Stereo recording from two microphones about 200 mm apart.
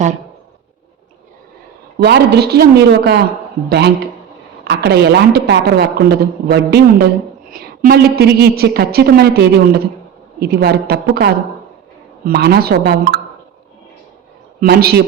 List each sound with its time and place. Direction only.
2.0 s a woman's voice: 55° right (ahead or behind)
14.6 s a woman's voice: 50° right (ahead or behind)